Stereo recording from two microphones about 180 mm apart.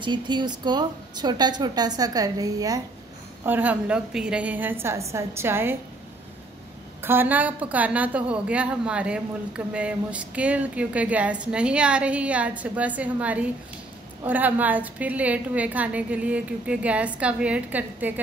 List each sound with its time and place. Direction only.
0.0 s a woman's voice: 25° right (ahead or behind)
7.0 s a woman's voice: 10° right (ahead or behind)